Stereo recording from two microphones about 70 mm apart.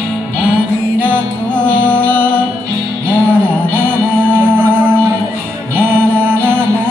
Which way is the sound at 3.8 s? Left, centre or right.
Right.